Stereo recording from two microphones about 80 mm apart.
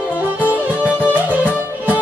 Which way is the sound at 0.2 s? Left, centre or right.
Centre.